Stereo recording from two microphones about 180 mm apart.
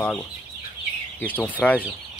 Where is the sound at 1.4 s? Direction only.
10° left (ahead or behind).